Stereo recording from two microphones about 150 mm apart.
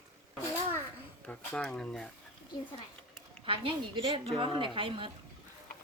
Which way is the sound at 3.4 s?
35° right (ahead or behind).